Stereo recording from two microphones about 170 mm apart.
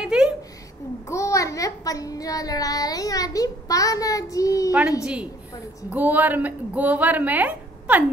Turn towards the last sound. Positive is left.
turn(degrees=-10)  # may be behind; listen again after turning